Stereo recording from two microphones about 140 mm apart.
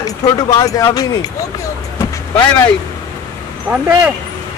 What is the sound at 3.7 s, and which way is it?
Speech, 10° right (ahead or behind).